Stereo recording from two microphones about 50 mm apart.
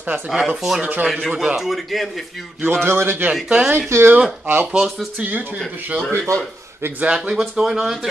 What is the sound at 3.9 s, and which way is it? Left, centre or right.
Speech, right.